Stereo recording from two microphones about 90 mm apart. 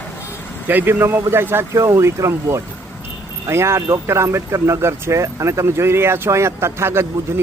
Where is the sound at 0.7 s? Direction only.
20° right (ahead or behind).